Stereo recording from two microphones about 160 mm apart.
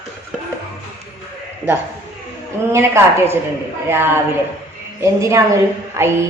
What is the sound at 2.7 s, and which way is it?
A man's voice, 15° right (ahead or behind).